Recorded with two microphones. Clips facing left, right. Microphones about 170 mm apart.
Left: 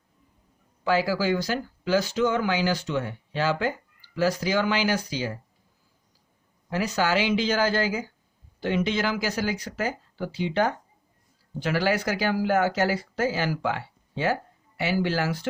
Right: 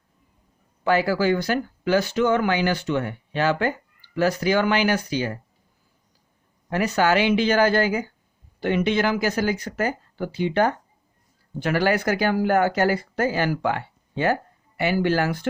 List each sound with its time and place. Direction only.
0.9 s speech: 60° right (ahead or behind)
6.7 s speech: 60° right (ahead or behind)